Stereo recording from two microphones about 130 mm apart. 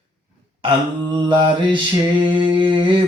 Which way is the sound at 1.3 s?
40° right (ahead or behind).